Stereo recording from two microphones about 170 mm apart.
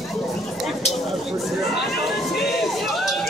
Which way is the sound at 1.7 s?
70° left (ahead or behind).